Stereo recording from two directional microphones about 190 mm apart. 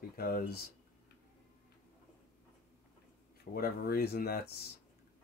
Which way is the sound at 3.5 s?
55° left (ahead or behind).